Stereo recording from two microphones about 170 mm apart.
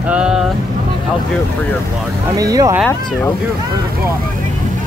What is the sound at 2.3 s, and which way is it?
Speech, 20° right (ahead or behind).